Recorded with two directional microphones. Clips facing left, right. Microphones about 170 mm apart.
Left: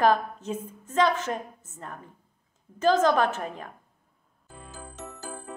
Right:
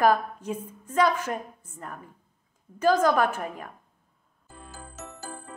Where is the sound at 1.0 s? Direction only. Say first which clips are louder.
Even; 25° left (ahead or behind).